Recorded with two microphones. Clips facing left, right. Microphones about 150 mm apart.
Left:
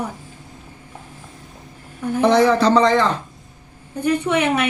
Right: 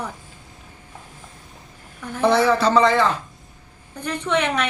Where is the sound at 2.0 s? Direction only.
10° left (ahead or behind).